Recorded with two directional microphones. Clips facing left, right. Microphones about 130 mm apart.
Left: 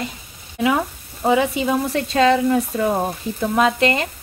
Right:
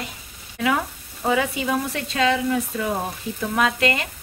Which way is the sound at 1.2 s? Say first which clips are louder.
Left 5 dB; 25° left (ahead or behind).